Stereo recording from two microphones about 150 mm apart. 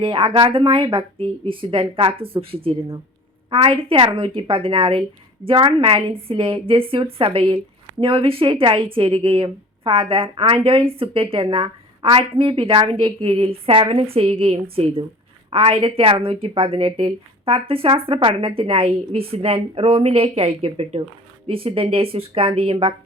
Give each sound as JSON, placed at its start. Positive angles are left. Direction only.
{"t": 0.0, "sound": "speech", "side_deg": -35}